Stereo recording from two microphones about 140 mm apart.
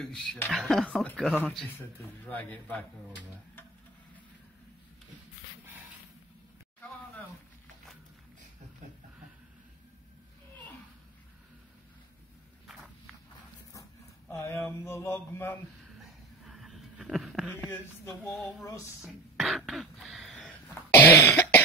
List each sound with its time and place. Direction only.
0.0 s speech: 5° left (ahead or behind)
8.8 s a sound: 55° right (ahead or behind)
14.3 s mantra: 20° left (ahead or behind)
16.4 s a sound: centre (ahead or behind)
17.6 s speech: 15° left (ahead or behind)
18.9 s throat clearing: centre (ahead or behind)
20.6 s cough: 15° left (ahead or behind)